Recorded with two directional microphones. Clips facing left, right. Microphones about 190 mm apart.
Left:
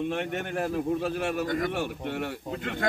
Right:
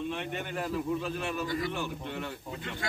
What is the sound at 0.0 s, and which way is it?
Speech, 65° left (ahead or behind).